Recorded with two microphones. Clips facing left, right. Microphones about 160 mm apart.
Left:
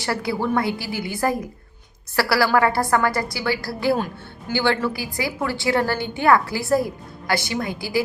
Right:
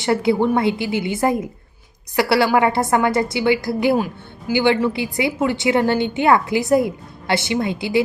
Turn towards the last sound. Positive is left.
turn(degrees=-25)  # may be behind; listen again after turning